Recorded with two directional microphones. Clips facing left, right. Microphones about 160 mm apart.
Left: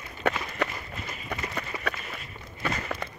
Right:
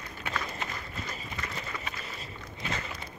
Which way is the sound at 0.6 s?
70° left (ahead or behind).